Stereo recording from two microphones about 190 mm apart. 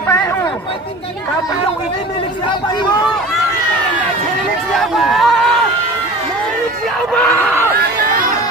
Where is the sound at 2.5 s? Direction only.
25° left (ahead or behind).